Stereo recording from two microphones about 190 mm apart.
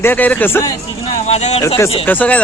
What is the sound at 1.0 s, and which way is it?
Speech, 35° left (ahead or behind).